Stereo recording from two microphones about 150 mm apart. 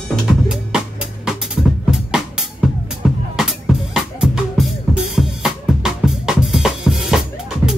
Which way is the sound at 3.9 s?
5° right (ahead or behind).